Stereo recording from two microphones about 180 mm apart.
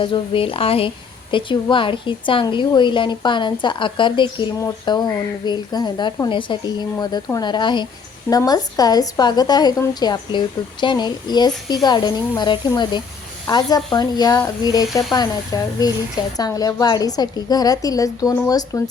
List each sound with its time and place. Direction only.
0.0 s a woman's voice: 30° left (ahead or behind)